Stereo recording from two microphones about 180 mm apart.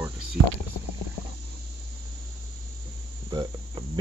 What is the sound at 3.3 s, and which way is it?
Cricket, 25° right (ahead or behind).